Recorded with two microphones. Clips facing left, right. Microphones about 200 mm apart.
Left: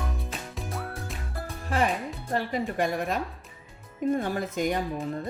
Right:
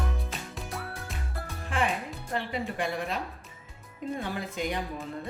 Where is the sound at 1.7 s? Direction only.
40° left (ahead or behind).